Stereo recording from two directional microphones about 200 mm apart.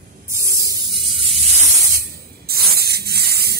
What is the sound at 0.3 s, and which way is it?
Spray, 15° right (ahead or behind).